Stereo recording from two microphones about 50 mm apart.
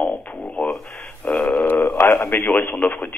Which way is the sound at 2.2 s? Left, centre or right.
Left.